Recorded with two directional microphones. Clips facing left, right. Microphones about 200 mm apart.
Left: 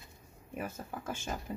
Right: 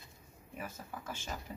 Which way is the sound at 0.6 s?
50° left (ahead or behind).